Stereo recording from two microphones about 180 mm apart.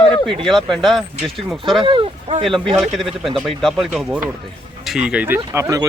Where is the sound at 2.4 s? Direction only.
Centre (ahead or behind).